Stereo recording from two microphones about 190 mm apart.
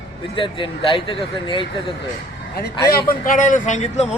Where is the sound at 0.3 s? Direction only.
25° left (ahead or behind).